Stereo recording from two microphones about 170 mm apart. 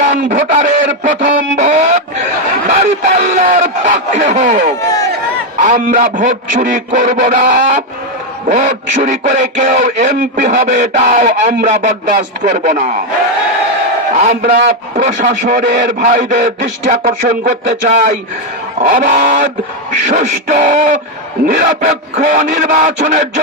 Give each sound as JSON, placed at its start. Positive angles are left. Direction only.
{"t": 0.1, "sound": "a sound", "side_deg": -45}
{"t": 2.6, "sound": "speech", "side_deg": -45}
{"t": 14.2, "sound": "speech", "side_deg": -50}